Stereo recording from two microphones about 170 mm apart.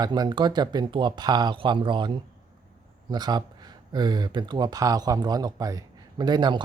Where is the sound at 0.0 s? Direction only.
25° right (ahead or behind).